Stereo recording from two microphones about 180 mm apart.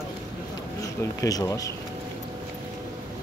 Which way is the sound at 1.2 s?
20° left (ahead or behind).